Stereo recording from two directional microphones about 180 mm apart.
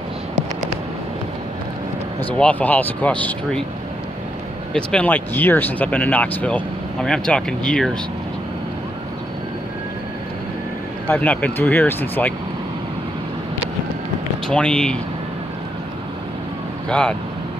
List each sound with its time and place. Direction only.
2.3 s speech: 10° left (ahead or behind)
4.7 s speech: 10° left (ahead or behind)
11.1 s speech: 10° left (ahead or behind)
14.5 s speech: 5° left (ahead or behind)